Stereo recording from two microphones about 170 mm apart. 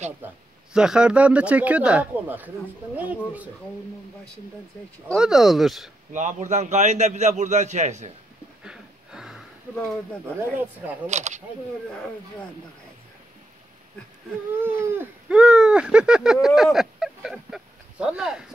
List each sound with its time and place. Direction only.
0.2 s speech: 10° right (ahead or behind)
5.0 s speech: centre (ahead or behind)
6.1 s a man's voice: 45° right (ahead or behind)
8.6 s a sound: 5° right (ahead or behind)
11.1 s speech: 40° right (ahead or behind)
14.6 s a sound: 10° right (ahead or behind)